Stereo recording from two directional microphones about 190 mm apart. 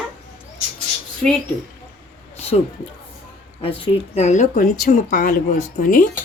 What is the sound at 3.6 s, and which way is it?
Speech, 30° left (ahead or behind).